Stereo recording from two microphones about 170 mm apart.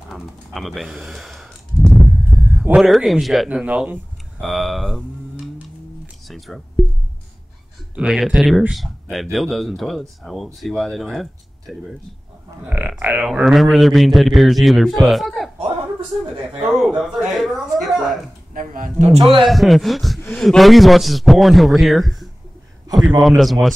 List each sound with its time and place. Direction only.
0.1 s a sound: centre (ahead or behind)
2.2 s a man's voice: 10° right (ahead or behind)
6.2 s a sound: centre (ahead or behind)
7.9 s a man's voice: 5° right (ahead or behind)
16.7 s a man's voice: centre (ahead or behind)
18.5 s speech: 55° right (ahead or behind)
19.4 s a man's voice: centre (ahead or behind)